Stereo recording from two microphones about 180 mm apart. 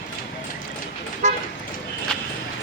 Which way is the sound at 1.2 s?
40° right (ahead or behind).